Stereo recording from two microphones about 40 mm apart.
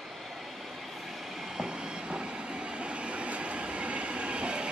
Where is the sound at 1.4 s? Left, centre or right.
Centre.